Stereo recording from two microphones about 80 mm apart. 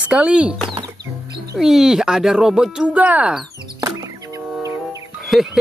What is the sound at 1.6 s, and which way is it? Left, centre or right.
Speech, centre.